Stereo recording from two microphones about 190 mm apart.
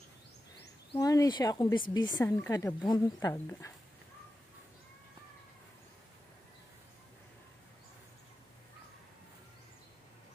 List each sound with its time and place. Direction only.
0.9 s a woman's voice: 20° left (ahead or behind)